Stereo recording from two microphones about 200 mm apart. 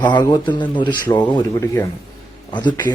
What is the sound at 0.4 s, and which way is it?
Speech, 25° left (ahead or behind).